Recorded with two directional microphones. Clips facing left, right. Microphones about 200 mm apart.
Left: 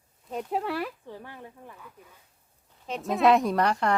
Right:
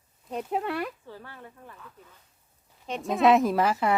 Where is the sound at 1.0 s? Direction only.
15° left (ahead or behind).